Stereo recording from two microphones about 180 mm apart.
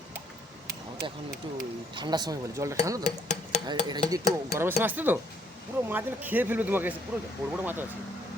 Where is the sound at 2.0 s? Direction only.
25° right (ahead or behind).